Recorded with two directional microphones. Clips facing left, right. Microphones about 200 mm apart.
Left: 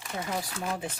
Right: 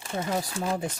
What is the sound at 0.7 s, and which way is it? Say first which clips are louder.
Speech: right 4 dB; 40° right (ahead or behind).